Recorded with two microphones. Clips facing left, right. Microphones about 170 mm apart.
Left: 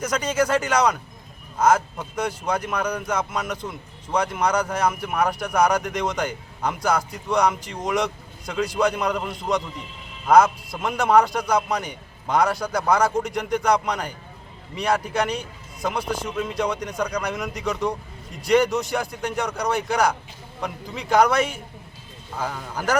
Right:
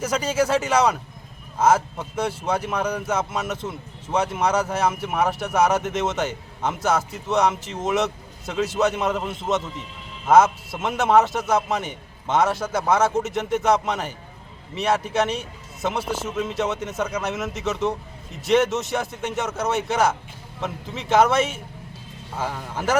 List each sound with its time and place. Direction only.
0.1 s speech: 30° right (ahead or behind)
0.4 s a man's voice: 5° right (ahead or behind)